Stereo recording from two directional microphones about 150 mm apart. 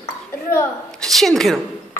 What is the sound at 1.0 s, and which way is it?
Speech, centre (ahead or behind).